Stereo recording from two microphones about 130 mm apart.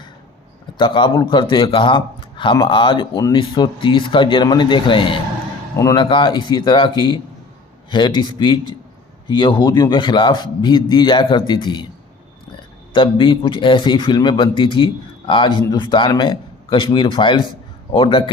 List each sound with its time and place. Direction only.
0.8 s a man's voice: 40° left (ahead or behind)
5.7 s a man's voice: 25° left (ahead or behind)
6.0 s a man's voice: 40° left (ahead or behind)
12.9 s a man's voice: 40° left (ahead or behind)